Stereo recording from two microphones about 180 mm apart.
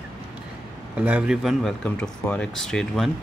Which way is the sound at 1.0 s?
5° right (ahead or behind).